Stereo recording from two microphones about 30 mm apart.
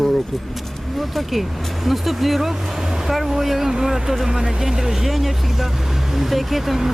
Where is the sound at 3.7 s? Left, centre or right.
Centre.